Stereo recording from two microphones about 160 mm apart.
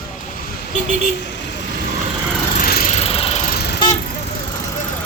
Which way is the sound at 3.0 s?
40° left (ahead or behind).